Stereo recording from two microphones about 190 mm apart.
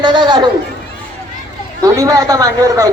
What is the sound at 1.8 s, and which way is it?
A man's voice, 20° right (ahead or behind).